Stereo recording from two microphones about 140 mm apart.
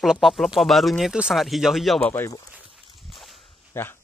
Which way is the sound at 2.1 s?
20° left (ahead or behind).